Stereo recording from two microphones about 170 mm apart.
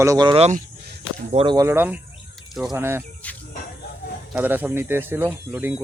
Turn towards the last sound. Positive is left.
turn(degrees=-10)  # may be behind; listen again after turning